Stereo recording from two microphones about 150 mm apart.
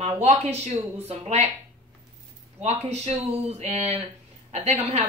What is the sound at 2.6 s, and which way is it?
Speech, 50° right (ahead or behind).